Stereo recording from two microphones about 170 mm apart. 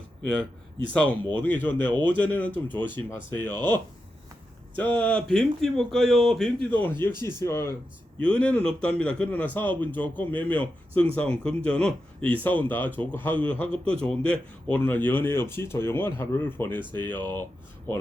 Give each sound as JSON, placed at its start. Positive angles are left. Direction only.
{"t": 1.3, "sound": "speech", "side_deg": 10}
{"t": 4.8, "sound": "speech", "side_deg": 10}